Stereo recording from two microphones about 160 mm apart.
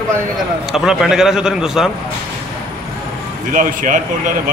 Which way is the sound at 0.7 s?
Centre (ahead or behind).